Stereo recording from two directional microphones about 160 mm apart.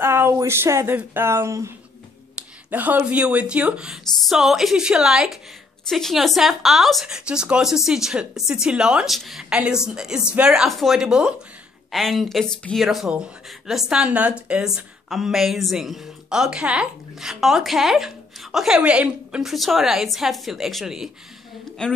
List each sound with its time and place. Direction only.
0.0 s speech: 15° right (ahead or behind); by 21.9 s 5° left (ahead or behind)